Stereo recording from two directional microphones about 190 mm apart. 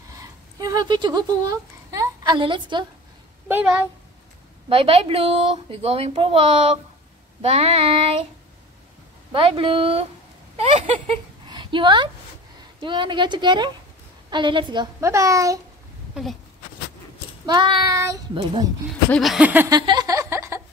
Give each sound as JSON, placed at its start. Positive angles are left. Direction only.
{"t": 0.6, "sound": "speech", "side_deg": -20}
{"t": 3.4, "sound": "a woman's voice", "side_deg": -10}
{"t": 4.6, "sound": "speech", "side_deg": -30}
{"t": 9.3, "sound": "a child's voice", "side_deg": -30}
{"t": 11.4, "sound": "a sound", "side_deg": -25}
{"t": 12.8, "sound": "a child's voice", "side_deg": -25}
{"t": 17.5, "sound": "a child's voice", "side_deg": -25}
{"t": 19.0, "sound": "a sound", "side_deg": 0}
{"t": 19.7, "sound": "a sound", "side_deg": -20}